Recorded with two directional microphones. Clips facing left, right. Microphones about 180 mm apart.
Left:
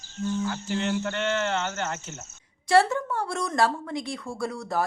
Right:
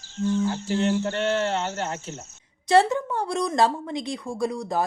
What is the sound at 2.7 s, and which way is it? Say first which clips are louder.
A woman's voice: right 2 dB; 20° right (ahead or behind).